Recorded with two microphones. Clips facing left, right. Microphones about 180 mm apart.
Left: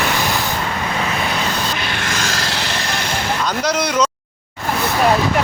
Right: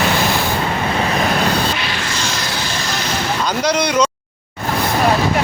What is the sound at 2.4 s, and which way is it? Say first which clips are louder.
Vehicle: even; 80° left.